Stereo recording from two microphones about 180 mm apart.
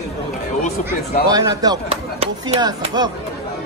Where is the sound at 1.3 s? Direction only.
20° right (ahead or behind).